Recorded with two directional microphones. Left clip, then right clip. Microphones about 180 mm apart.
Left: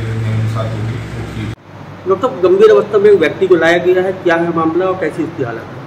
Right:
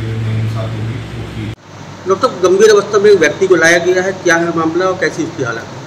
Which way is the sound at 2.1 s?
5° right (ahead or behind).